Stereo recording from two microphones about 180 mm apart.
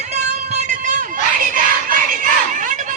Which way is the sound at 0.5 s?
40° right (ahead or behind).